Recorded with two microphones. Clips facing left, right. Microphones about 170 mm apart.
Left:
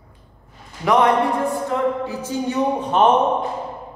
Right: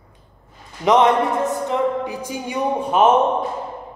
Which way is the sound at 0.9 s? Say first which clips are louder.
Right 1 dB; 20° right (ahead or behind).